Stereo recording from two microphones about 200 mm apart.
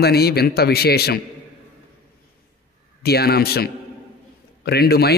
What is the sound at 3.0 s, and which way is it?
A man's voice, 50° left (ahead or behind).